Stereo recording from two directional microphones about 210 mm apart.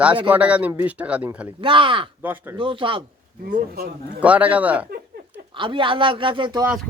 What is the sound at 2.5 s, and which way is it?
Speech, 25° right (ahead or behind).